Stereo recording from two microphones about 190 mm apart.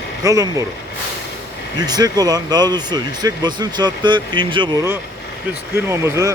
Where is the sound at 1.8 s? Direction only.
20° right (ahead or behind).